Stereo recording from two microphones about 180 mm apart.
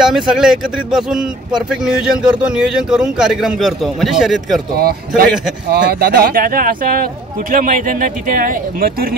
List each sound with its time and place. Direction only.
0.0 s a man's voice: centre (ahead or behind)
4.7 s a man's voice: 60° right (ahead or behind)